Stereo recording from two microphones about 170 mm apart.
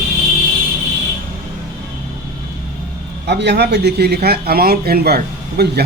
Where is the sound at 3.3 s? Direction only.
75° right (ahead or behind).